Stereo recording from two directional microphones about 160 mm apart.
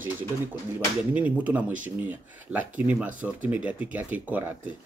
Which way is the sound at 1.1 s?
10° right (ahead or behind).